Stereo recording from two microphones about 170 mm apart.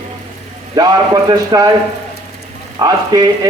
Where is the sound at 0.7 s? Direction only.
25° right (ahead or behind).